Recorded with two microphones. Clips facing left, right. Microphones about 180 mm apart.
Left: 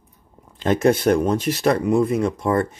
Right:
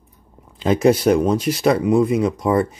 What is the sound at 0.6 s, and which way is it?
Speech, centre (ahead or behind).